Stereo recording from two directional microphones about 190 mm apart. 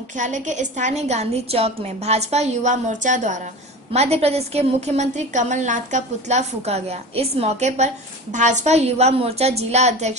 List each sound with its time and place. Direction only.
0.2 s a woman's voice: 40° right (ahead or behind)